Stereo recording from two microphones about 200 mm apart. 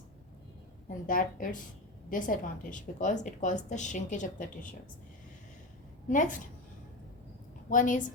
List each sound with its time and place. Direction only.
0.9 s a woman's voice: 40° left (ahead or behind)
6.1 s a woman's voice: 40° left (ahead or behind)
7.7 s a woman's voice: 40° left (ahead or behind)